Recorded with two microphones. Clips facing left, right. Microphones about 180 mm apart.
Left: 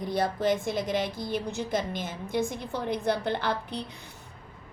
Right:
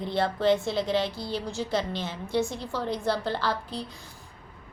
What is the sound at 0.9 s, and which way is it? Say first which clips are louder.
A woman's voice: right 1 dB; 15° left (ahead or behind).